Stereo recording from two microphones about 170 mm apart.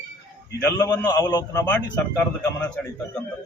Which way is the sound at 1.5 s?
10° left (ahead or behind).